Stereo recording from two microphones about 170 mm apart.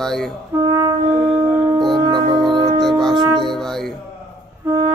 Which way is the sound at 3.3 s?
Centre (ahead or behind).